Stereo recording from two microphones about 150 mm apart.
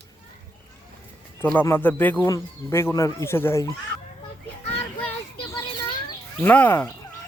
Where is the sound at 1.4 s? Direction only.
15° left (ahead or behind).